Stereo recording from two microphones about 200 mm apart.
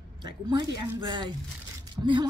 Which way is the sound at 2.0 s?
15° right (ahead or behind).